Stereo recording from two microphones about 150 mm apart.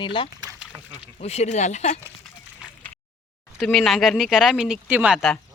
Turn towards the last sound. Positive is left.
turn(degrees=-5)  # may be behind; listen again after turning